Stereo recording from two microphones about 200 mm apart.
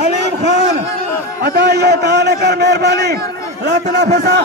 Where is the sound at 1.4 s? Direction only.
55° right (ahead or behind).